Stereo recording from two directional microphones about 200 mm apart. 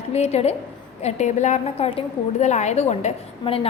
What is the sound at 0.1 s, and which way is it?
A woman's voice, 35° left (ahead or behind).